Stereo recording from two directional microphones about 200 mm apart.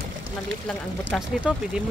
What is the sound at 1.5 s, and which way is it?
Speech, 5° right (ahead or behind).